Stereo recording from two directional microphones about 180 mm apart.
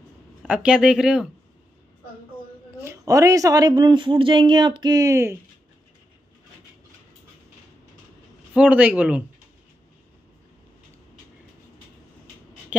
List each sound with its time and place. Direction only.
0.4 s speech: 5° right (ahead or behind)
2.8 s speech: 15° right (ahead or behind)
8.5 s a man's voice: 10° right (ahead or behind)